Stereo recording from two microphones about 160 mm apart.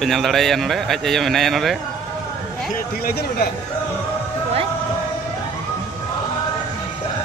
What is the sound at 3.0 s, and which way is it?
Speech, 75° left (ahead or behind).